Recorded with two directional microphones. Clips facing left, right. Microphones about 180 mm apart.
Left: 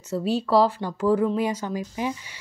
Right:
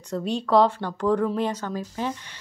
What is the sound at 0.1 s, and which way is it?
Speech, 5° left (ahead or behind).